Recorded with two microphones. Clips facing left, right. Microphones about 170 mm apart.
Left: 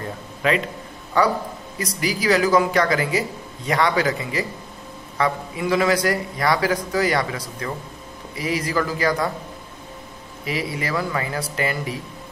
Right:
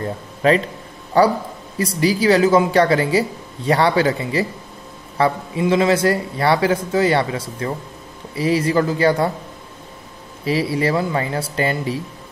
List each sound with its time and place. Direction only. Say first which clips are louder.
0.4 s a man's voice: right 5 dB; 35° right (ahead or behind)
10.4 s speech: right 8 dB; 30° right (ahead or behind)